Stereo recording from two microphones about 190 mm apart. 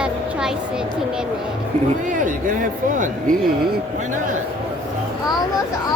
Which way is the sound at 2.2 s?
45° right (ahead or behind).